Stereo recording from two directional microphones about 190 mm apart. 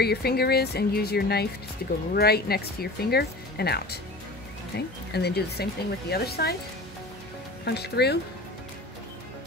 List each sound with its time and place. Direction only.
0.0 s speech: 55° left (ahead or behind)
7.6 s speech: 60° left (ahead or behind)